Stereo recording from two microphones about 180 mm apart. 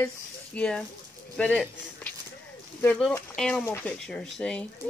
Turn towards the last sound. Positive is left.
turn(degrees=5)  # may be behind; listen again after turning